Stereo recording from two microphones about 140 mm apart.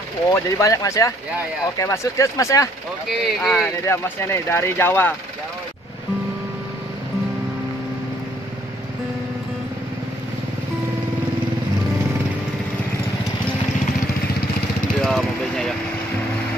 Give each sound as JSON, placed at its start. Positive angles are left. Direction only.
{"t": 0.3, "sound": "speech", "side_deg": 20}
{"t": 3.1, "sound": "speech", "side_deg": 0}
{"t": 3.8, "sound": "speech", "side_deg": 20}
{"t": 15.0, "sound": "a sound", "side_deg": 5}